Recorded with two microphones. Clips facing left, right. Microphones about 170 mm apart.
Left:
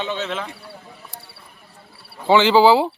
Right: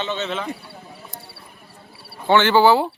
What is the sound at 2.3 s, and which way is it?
Speech, 10° left (ahead or behind).